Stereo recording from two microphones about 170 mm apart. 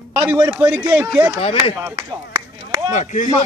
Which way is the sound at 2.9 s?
45° left (ahead or behind).